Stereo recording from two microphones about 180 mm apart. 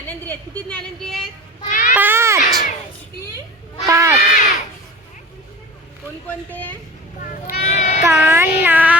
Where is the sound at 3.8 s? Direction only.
15° right (ahead or behind).